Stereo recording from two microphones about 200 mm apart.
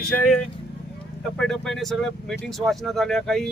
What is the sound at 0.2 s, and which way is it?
Speech, 5° left (ahead or behind).